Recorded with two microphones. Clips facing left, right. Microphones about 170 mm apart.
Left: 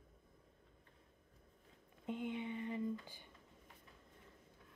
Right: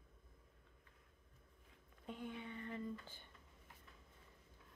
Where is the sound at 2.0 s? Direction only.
20° left (ahead or behind).